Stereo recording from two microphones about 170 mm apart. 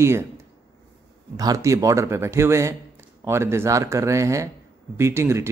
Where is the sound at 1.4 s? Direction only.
20° right (ahead or behind).